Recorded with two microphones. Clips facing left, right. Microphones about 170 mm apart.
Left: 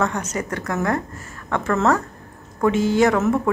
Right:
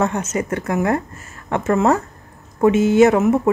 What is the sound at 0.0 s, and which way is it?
Speech, 25° right (ahead or behind).